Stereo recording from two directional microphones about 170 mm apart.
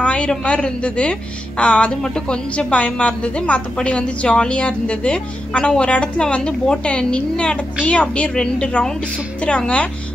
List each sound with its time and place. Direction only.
0.0 s a woman's voice: 5° left (ahead or behind)